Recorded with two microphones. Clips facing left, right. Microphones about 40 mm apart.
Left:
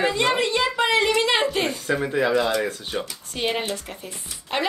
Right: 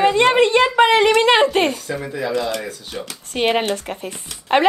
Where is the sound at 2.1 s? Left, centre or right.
Left.